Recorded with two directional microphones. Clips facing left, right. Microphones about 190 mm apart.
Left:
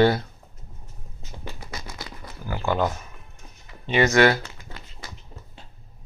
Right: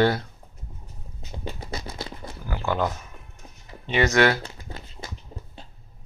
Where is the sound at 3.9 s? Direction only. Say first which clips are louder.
Left 2 dB; 5° left (ahead or behind).